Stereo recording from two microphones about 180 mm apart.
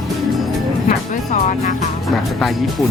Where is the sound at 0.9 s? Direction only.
40° left (ahead or behind).